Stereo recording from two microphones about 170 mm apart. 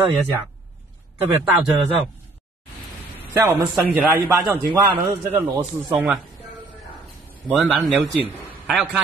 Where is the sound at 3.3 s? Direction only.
15° right (ahead or behind).